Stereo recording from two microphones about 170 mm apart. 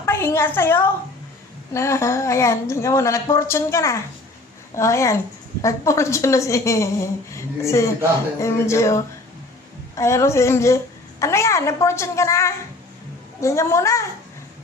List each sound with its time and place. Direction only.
0.0 s a woman's voice: 15° left (ahead or behind)